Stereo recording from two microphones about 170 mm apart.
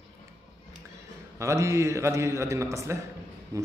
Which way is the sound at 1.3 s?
15° right (ahead or behind).